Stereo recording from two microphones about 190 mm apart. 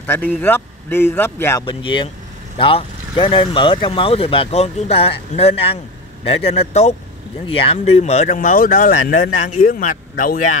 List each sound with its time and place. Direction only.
0.0 s speech: 10° left (ahead or behind)
1.7 s speech: 25° left (ahead or behind); by 10.6 s 45° left (ahead or behind)